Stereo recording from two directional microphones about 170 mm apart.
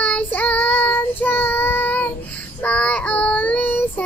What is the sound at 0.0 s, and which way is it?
Child singing, 5° left (ahead or behind).